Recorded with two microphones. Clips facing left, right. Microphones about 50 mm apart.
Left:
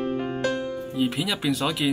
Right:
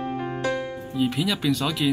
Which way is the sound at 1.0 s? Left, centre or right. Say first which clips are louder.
Right 2 dB; centre.